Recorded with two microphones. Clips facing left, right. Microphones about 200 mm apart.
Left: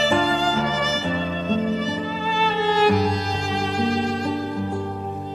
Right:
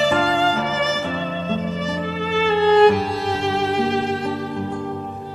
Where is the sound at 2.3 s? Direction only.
65° right (ahead or behind).